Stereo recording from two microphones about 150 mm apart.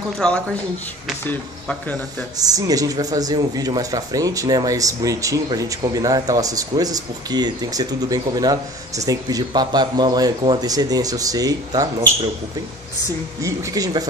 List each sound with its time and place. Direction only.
0.2 s speech: 5° left (ahead or behind)
2.3 s speech: 25° right (ahead or behind)
13.4 s speech: 20° right (ahead or behind)